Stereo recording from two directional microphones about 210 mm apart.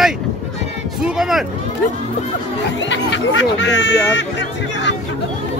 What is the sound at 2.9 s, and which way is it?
Speech, 60° left (ahead or behind).